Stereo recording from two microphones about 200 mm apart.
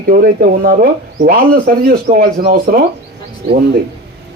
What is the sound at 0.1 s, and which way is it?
Speech, 45° right (ahead or behind).